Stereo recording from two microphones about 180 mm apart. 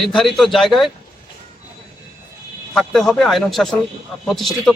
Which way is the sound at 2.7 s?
Centre (ahead or behind).